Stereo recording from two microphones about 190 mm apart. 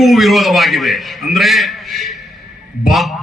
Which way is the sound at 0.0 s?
Centre (ahead or behind).